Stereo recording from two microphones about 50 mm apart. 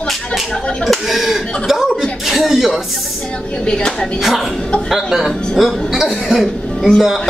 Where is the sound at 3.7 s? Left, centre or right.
Centre.